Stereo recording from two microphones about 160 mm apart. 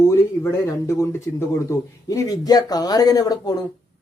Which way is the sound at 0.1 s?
15° left (ahead or behind).